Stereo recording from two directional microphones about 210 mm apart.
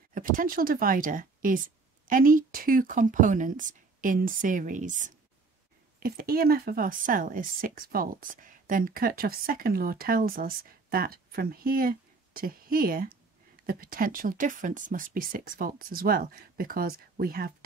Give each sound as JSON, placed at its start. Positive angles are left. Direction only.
{"t": 0.1, "sound": "a woman's voice", "side_deg": -40}